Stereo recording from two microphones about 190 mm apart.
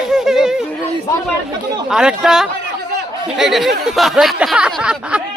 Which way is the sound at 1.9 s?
5° right (ahead or behind).